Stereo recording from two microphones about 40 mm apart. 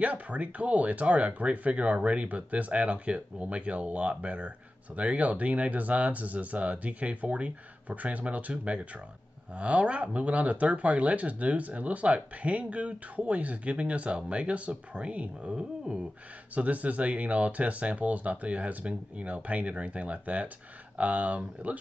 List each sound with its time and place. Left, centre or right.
0.0 s speech: right
15.5 s a sound: centre
16.5 s speech: right